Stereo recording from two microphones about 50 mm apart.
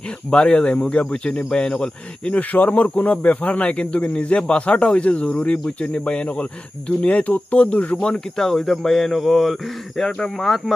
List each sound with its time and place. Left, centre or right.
0.3 s speech: centre
2.4 s speech: left
8.2 s speech: centre